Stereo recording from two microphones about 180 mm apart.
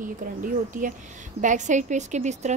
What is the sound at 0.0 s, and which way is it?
A woman's voice, 50° right (ahead or behind).